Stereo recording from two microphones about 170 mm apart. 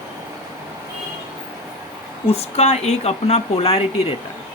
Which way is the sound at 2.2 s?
40° left (ahead or behind).